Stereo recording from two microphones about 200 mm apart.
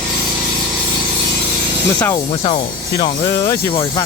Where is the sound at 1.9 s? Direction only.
15° left (ahead or behind).